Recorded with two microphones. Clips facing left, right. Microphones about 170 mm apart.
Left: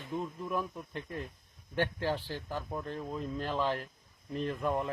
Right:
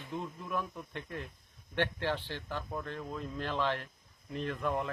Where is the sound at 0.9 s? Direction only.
35° left (ahead or behind).